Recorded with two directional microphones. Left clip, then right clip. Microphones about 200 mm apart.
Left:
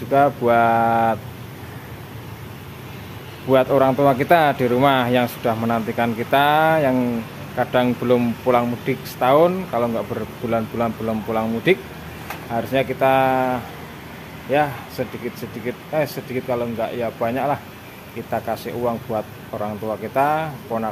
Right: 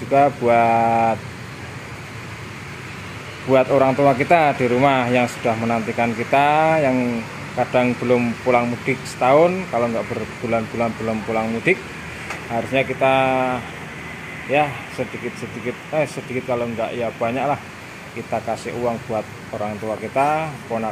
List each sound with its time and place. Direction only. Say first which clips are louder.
0.1 s speech: right 1 dB; 5° left (ahead or behind)
3.4 s speech: even; 5° left (ahead or behind)
15.0 s speech: even; 5° left (ahead or behind)